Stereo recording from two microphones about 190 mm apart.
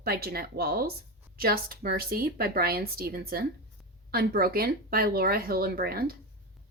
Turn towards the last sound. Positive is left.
turn(degrees=-50)  # may be behind; listen again after turning